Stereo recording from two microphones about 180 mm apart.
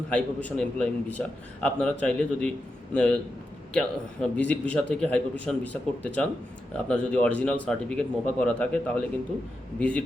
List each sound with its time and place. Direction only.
0.1 s a man's voice: 10° left (ahead or behind)